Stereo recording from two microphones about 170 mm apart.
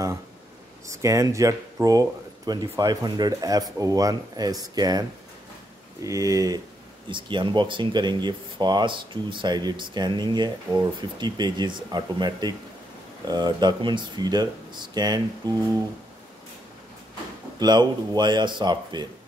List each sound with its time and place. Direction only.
0.8 s speech: 20° right (ahead or behind)
6.0 s speech: 20° right (ahead or behind)
17.6 s speech: 25° right (ahead or behind)